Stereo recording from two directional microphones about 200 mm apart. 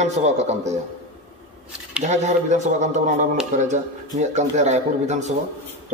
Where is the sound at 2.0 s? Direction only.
35° right (ahead or behind).